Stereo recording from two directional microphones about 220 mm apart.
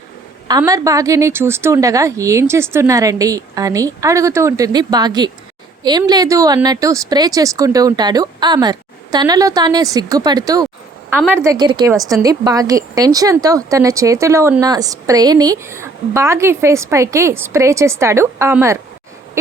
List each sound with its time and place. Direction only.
0.4 s a woman's voice: 15° right (ahead or behind)